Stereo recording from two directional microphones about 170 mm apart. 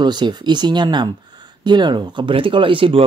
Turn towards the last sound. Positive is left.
turn(degrees=-30)  # may be behind; listen again after turning